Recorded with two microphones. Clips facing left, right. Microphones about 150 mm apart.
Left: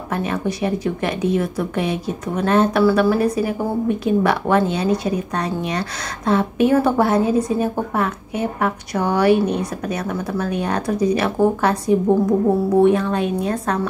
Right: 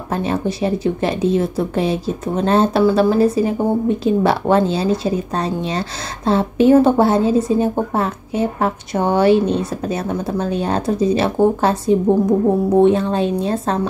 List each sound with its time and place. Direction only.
0.1 s a woman's voice: 30° right (ahead or behind)